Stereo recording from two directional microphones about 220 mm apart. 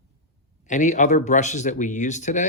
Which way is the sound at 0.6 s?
35° left (ahead or behind).